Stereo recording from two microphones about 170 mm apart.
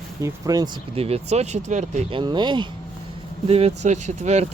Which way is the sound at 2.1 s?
30° right (ahead or behind).